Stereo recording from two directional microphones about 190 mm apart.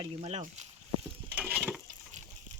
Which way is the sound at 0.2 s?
35° right (ahead or behind).